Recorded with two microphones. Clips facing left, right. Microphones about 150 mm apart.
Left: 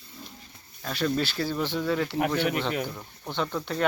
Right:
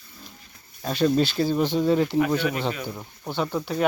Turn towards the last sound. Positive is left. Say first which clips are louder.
# right 3 dB
turn(degrees=-10)  # may be behind; listen again after turning